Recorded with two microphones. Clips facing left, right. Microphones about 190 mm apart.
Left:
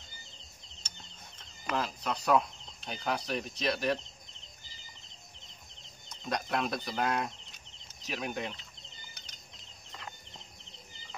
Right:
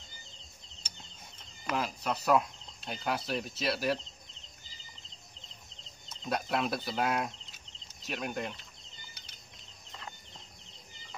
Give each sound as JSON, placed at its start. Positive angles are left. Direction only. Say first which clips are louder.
{"t": 1.7, "sound": "speech", "louder": "even", "side_deg": -5}
{"t": 6.0, "sound": "speech", "louder": "right 1 dB", "side_deg": -5}